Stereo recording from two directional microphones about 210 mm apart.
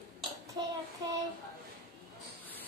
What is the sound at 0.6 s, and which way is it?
Child singing, 20° right (ahead or behind).